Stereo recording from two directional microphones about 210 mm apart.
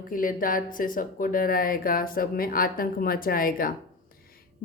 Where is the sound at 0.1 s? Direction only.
40° left (ahead or behind).